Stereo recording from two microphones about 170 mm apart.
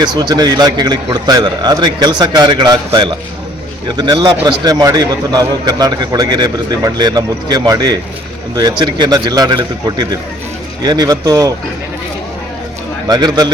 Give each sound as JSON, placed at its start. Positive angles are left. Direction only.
{"t": 0.0, "sound": "a man's voice", "side_deg": -25}
{"t": 13.1, "sound": "a man's voice", "side_deg": -25}